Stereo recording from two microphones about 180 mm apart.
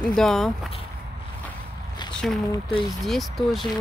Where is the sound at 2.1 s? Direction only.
Centre (ahead or behind).